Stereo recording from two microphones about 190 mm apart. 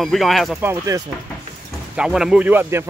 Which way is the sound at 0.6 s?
15° right (ahead or behind).